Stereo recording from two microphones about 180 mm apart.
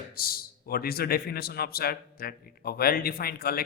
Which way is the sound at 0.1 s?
55° left (ahead or behind).